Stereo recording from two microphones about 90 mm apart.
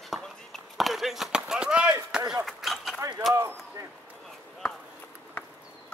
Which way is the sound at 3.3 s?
30° right (ahead or behind).